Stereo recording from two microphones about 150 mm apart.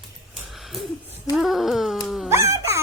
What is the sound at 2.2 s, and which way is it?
Insect, 20° right (ahead or behind).